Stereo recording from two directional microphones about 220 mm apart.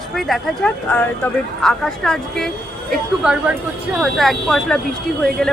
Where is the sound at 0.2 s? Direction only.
Centre (ahead or behind).